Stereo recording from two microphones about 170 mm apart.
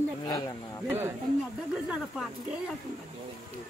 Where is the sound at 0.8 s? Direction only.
15° right (ahead or behind).